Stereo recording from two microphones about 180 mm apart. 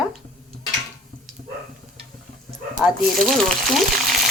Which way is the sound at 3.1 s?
Centre (ahead or behind).